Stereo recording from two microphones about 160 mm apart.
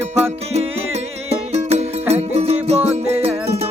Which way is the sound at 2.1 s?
40° right (ahead or behind).